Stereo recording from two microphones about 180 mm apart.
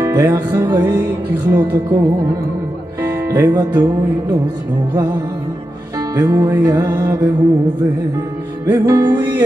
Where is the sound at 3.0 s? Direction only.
15° right (ahead or behind).